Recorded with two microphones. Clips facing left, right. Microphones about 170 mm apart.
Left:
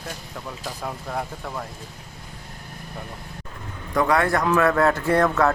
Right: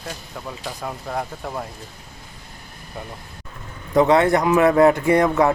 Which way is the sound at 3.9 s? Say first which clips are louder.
Right 5 dB; 20° right (ahead or behind).